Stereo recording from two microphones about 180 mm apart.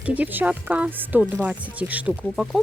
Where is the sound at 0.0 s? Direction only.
10° right (ahead or behind).